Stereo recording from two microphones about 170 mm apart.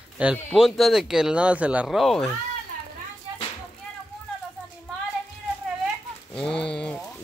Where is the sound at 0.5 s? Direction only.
Centre (ahead or behind).